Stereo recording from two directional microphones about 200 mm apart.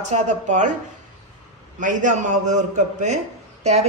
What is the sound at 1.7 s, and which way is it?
Speech, 40° right (ahead or behind).